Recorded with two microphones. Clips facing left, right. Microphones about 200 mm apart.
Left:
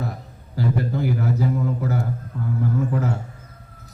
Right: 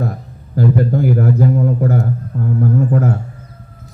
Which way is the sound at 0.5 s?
50° right (ahead or behind).